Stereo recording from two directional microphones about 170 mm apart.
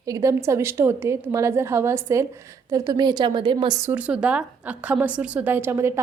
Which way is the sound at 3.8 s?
10° right (ahead or behind).